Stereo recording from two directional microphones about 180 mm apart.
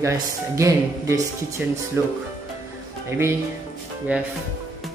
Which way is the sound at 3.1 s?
15° right (ahead or behind).